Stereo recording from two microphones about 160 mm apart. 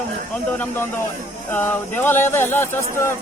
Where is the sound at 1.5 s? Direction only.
10° left (ahead or behind).